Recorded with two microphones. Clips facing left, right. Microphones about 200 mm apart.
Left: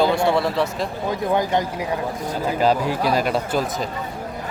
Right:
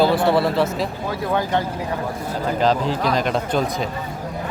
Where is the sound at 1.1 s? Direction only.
15° left (ahead or behind).